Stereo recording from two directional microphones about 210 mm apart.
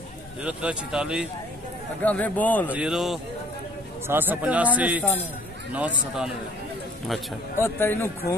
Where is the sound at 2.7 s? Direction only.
5° right (ahead or behind).